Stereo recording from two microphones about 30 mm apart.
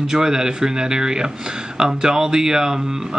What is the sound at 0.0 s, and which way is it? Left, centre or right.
A man's voice, centre.